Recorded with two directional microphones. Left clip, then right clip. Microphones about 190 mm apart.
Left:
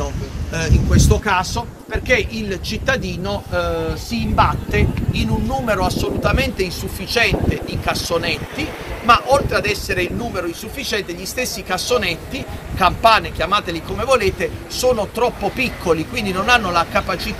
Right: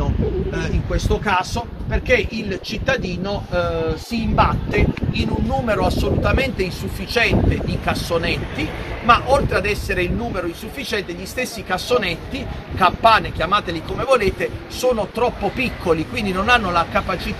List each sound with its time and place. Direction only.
0.0 s a sound: 45° right (ahead or behind)
1.5 s speech: 40° right (ahead or behind)
5.5 s speech: 15° right (ahead or behind); by 17.4 s centre (ahead or behind)